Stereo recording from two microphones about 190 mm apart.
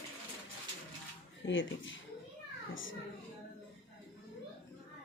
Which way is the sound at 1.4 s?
85° left.